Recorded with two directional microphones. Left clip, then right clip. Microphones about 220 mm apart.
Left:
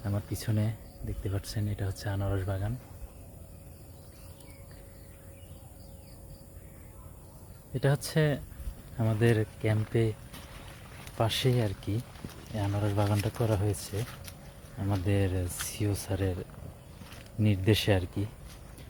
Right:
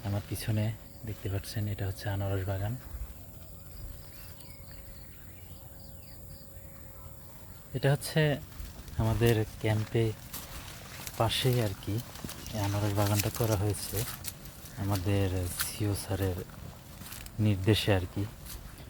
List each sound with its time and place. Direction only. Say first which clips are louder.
0.0 s speech: left 1 dB; 15° left (ahead or behind)
7.7 s speech: even; 10° left (ahead or behind)
11.2 s speech: even; 15° left (ahead or behind)
14.0 s insect: right 2 dB; 50° right (ahead or behind)
14.8 s speech: left 1 dB; 15° left (ahead or behind)
17.4 s speech: left 1 dB; 10° left (ahead or behind)